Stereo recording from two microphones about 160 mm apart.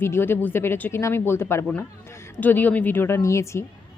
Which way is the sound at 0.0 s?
15° left (ahead or behind).